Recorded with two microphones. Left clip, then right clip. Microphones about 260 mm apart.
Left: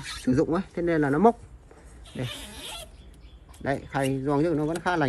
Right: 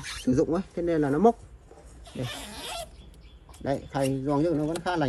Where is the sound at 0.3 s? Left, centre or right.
Centre.